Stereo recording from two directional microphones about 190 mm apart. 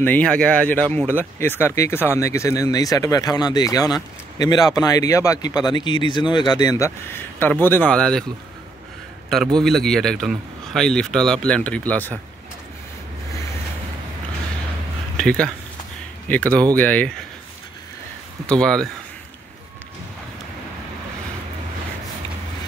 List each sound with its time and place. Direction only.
0.0 s a man's voice: 5° left (ahead or behind)
9.6 s a man's voice: centre (ahead or behind)
15.1 s speech: 5° left (ahead or behind)
18.5 s a man's voice: 5° left (ahead or behind)